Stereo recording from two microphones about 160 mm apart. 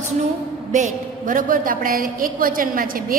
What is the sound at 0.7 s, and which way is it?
A woman's voice, 50° right (ahead or behind).